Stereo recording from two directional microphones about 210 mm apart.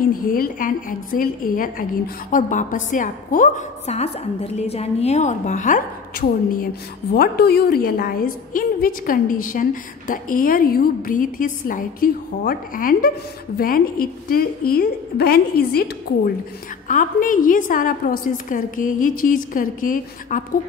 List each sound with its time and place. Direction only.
0.1 s a woman's voice: 40° left (ahead or behind)
16.8 s a woman's voice: 40° left (ahead or behind)